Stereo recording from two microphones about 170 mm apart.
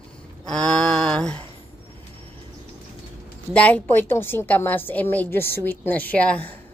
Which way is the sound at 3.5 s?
10° left (ahead or behind).